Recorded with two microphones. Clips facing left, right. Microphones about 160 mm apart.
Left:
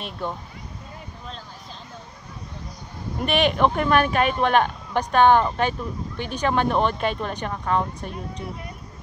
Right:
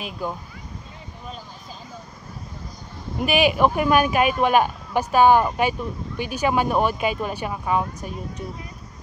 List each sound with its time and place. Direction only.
0.0 s speech: 5° right (ahead or behind)
3.2 s speech: 5° right (ahead or behind)